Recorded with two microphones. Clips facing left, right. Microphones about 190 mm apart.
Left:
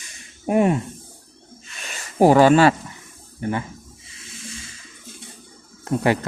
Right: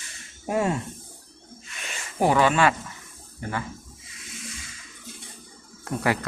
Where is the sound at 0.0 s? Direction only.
15° left (ahead or behind).